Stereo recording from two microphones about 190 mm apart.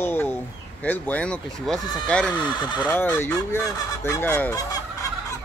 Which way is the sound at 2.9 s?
10° left (ahead or behind).